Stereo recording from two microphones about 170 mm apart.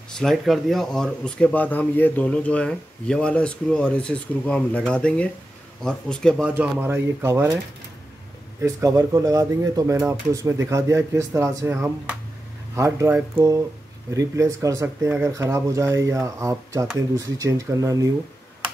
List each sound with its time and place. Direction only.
0.1 s speech: 5° left (ahead or behind)
6.5 s speech: 10° right (ahead or behind)
8.5 s speech: 15° right (ahead or behind)